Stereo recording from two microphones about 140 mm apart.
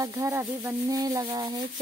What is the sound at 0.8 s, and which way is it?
Speech, 25° right (ahead or behind).